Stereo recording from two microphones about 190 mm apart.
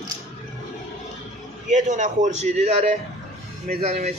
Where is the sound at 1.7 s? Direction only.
40° right (ahead or behind).